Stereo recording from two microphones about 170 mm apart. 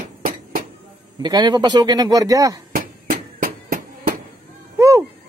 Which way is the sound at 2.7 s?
60° right (ahead or behind).